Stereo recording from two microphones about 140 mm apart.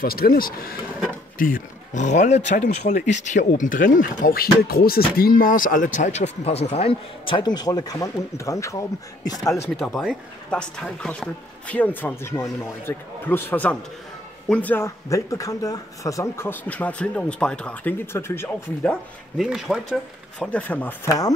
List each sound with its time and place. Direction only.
0.0 s speech: 90° left
1.4 s speech: 70° left (ahead or behind); by 9.7 s 25° left (ahead or behind)
9.8 s speech: centre (ahead or behind)
19.3 s speech: 5° right (ahead or behind)
20.5 s speech: 10° left (ahead or behind)
21.1 s speech: 25° left (ahead or behind)